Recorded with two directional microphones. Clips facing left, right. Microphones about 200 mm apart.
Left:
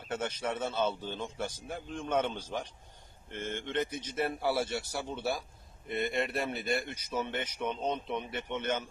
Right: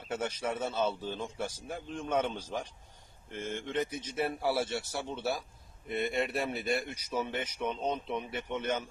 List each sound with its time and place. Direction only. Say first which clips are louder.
0.1 s a man's voice: even; 5° right (ahead or behind)